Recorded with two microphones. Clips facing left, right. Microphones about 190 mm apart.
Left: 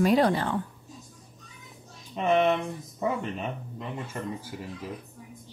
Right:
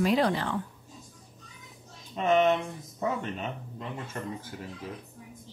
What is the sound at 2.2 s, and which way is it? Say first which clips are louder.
Speech: even; 5° left (ahead or behind).